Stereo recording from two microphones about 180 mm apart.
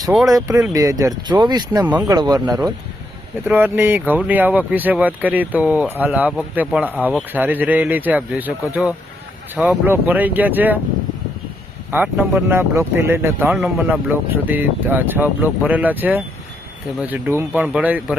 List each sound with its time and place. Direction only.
0.3 s speech: 20° right (ahead or behind)
3.4 s speech: 10° right (ahead or behind)
11.9 s speech: 5° right (ahead or behind)